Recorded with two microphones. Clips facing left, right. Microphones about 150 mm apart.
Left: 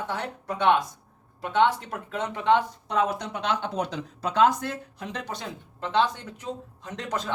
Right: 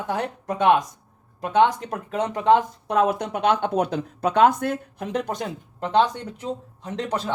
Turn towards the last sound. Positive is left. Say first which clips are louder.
# right 4 dB
turn(degrees=-30)  # may be behind; listen again after turning